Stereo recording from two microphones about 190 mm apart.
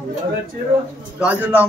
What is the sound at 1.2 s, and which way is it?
Speech, 5° right (ahead or behind).